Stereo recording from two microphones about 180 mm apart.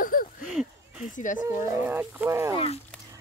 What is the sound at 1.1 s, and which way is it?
Speech, 45° left (ahead or behind).